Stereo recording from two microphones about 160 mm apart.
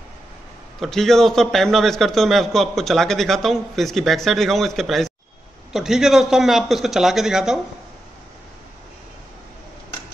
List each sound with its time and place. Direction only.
0.7 s a man's voice: centre (ahead or behind)